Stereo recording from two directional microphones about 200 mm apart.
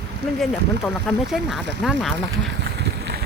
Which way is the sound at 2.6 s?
55° right (ahead or behind).